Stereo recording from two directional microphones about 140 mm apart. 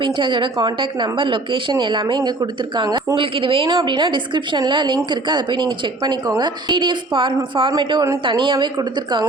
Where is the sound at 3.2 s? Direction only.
40° right (ahead or behind).